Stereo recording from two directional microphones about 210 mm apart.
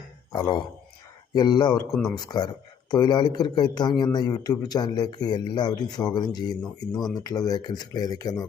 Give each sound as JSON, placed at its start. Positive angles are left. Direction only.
{"t": 1.3, "sound": "speech", "side_deg": 20}
{"t": 1.9, "sound": "speech", "side_deg": 5}
{"t": 2.1, "sound": "speech", "side_deg": 20}